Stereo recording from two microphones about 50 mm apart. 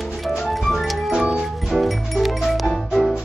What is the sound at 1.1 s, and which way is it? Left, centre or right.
Music, centre.